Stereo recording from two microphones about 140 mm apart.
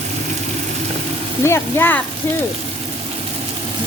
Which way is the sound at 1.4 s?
15° left (ahead or behind).